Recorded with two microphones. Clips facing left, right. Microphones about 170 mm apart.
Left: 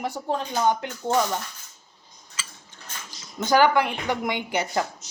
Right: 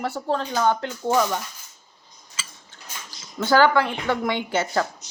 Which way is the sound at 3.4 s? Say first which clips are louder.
Right 1 dB; 15° left (ahead or behind).